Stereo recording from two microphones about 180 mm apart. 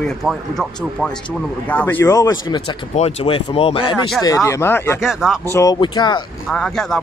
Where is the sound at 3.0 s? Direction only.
35° left (ahead or behind).